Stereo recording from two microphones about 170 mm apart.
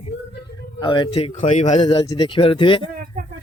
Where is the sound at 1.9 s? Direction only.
25° left (ahead or behind).